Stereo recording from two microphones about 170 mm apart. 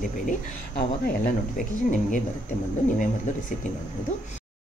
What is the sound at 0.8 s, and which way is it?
Speech, 60° left (ahead or behind).